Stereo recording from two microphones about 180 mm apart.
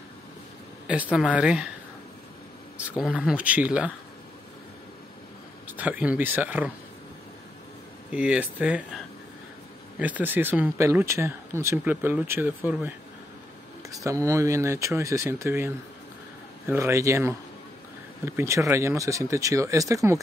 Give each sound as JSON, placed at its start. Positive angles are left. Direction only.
{"t": 1.1, "sound": "speech", "side_deg": -5}
{"t": 3.0, "sound": "speech", "side_deg": -5}
{"t": 5.7, "sound": "speech", "side_deg": -10}
{"t": 8.1, "sound": "speech", "side_deg": -5}